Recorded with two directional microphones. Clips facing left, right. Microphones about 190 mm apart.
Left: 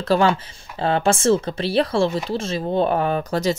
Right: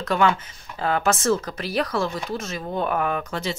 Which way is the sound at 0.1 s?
35° left (ahead or behind).